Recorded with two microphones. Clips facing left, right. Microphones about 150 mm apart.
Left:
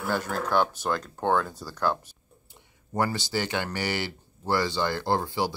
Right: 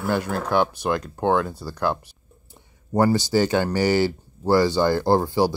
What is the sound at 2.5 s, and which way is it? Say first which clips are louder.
Speech: right 9 dB; 40° right (ahead or behind).